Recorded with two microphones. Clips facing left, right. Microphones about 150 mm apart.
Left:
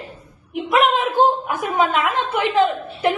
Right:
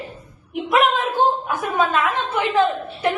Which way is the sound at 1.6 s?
20° left (ahead or behind).